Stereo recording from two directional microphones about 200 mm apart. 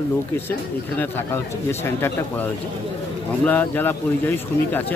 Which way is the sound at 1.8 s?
10° left (ahead or behind).